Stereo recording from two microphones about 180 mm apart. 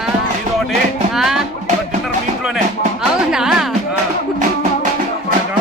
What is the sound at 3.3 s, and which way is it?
Music, 5° right (ahead or behind).